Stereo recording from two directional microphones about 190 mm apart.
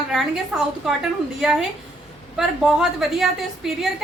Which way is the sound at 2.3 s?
Centre (ahead or behind).